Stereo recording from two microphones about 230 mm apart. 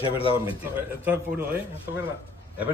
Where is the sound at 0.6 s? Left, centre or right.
Centre.